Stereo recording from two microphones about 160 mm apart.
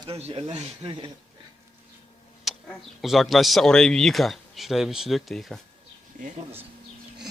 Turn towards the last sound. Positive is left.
turn(degrees=0)  # may be behind; listen again after turning